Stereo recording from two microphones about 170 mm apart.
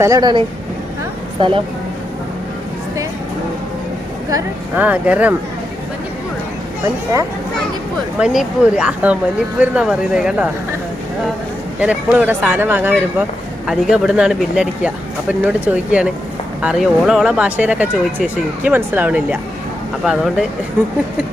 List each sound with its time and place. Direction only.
0.0 s speech: 20° right (ahead or behind)
4.3 s speech: 20° right (ahead or behind)
4.8 s speech: 10° right (ahead or behind)
8.2 s speech: 5° right (ahead or behind)
11.8 s speech: 5° right (ahead or behind)